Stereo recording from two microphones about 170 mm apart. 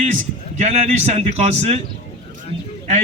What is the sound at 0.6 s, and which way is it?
A man's voice, 40° right (ahead or behind).